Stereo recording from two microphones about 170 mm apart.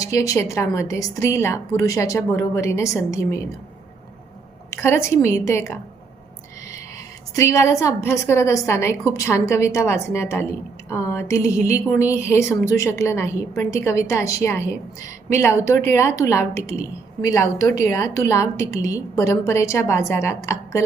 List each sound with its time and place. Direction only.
0.0 s a woman's voice: 20° left (ahead or behind)
4.7 s a woman's voice: 15° left (ahead or behind)
7.3 s a woman's voice: 20° left (ahead or behind)